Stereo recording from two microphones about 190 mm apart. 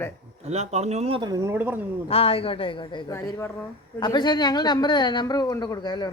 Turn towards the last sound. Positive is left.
turn(degrees=20)  # may be behind; listen again after turning